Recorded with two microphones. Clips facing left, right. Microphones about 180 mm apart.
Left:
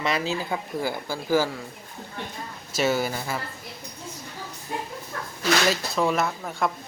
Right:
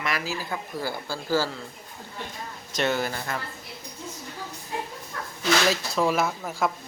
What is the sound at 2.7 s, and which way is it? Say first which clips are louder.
Speech: left 2 dB; 5° left (ahead or behind).